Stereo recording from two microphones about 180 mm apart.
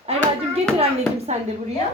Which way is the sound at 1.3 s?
40° right (ahead or behind).